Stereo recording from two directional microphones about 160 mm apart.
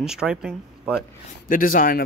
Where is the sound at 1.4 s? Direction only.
60° left (ahead or behind).